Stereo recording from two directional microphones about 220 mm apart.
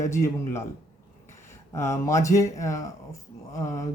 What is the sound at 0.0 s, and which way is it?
Speech, 15° left (ahead or behind).